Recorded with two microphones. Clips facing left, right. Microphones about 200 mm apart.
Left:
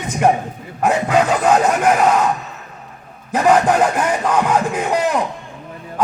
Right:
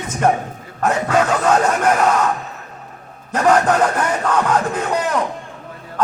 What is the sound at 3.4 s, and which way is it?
Speech, 10° left (ahead or behind).